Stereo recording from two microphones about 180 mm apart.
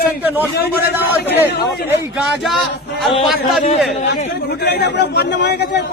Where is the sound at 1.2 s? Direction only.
10° right (ahead or behind).